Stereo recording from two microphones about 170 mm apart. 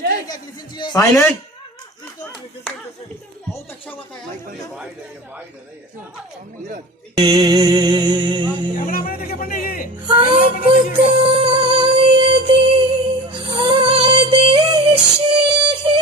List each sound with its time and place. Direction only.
0.8 s a man's voice: 20° left (ahead or behind)
3.5 s speech: 10° left (ahead or behind)
7.2 s music: 25° right (ahead or behind)
8.9 s a man's voice: 60° left (ahead or behind)
10.1 s music: 30° right (ahead or behind)